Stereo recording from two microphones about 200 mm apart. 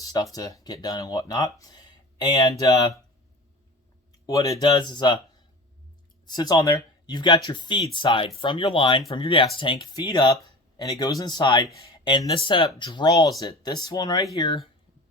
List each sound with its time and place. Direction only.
0.0 s speech: 20° left (ahead or behind)
4.3 s speech: 15° left (ahead or behind)